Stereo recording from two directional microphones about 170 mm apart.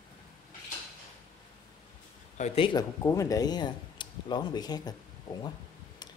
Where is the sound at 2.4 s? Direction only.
30° left (ahead or behind).